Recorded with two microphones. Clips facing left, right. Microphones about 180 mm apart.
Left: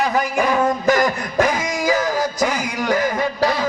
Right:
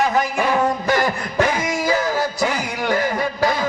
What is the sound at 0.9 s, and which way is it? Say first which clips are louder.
Music: left 2 dB; 40° left (ahead or behind).